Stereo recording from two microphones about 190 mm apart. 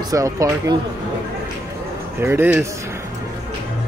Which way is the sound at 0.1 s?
15° right (ahead or behind).